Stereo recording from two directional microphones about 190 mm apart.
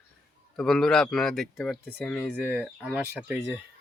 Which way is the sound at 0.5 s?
5° left (ahead or behind).